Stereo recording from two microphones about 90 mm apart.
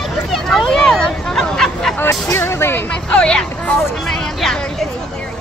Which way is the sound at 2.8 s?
10° left (ahead or behind).